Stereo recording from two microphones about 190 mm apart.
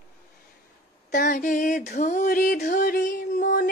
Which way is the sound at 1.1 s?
45° left (ahead or behind).